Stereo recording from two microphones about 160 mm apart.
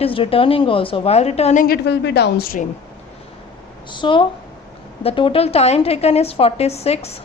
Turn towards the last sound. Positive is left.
turn(degrees=40)  # may be behind; listen again after turning